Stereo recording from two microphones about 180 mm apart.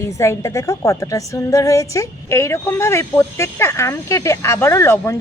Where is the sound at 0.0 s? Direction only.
15° left (ahead or behind).